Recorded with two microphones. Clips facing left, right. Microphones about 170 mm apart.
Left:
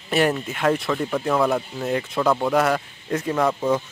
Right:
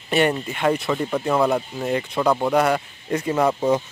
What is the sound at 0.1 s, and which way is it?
Speech, centre (ahead or behind).